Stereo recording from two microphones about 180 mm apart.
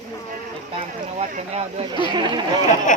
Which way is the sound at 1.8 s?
25° right (ahead or behind).